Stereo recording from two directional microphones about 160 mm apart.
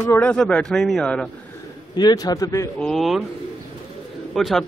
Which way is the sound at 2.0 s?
25° left (ahead or behind).